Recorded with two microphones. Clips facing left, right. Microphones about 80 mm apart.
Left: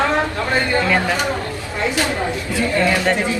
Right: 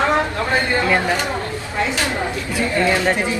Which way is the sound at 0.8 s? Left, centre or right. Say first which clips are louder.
Even; centre.